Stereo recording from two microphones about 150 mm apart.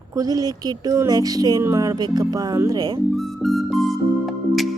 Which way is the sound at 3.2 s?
Centre (ahead or behind).